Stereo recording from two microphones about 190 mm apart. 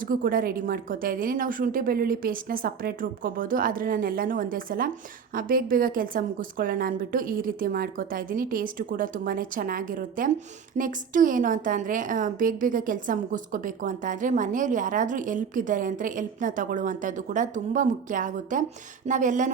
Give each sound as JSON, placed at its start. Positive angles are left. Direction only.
{"t": 0.0, "sound": "a woman's voice", "side_deg": -45}